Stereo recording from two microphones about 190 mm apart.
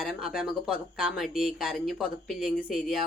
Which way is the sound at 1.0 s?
Centre (ahead or behind).